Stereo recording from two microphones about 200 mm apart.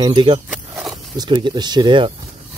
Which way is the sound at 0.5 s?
5° right (ahead or behind).